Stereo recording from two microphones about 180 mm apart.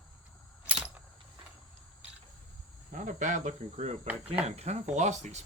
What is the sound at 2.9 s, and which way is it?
Speech, 45° right (ahead or behind).